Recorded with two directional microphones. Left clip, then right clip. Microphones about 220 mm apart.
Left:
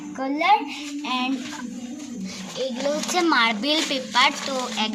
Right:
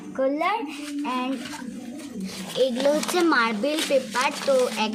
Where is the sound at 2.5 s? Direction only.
35° right (ahead or behind).